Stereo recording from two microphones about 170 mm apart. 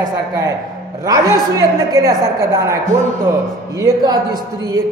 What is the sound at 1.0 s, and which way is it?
A man's voice, 20° right (ahead or behind).